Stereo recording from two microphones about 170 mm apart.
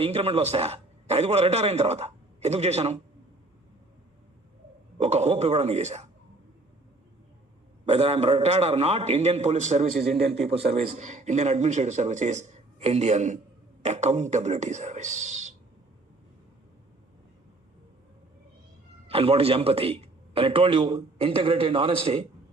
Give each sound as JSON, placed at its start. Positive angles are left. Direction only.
{"t": 0.0, "sound": "a man's voice", "side_deg": -35}
{"t": 4.9, "sound": "a man's voice", "side_deg": -40}
{"t": 7.9, "sound": "a man's voice", "side_deg": -40}
{"t": 19.0, "sound": "a man's voice", "side_deg": -35}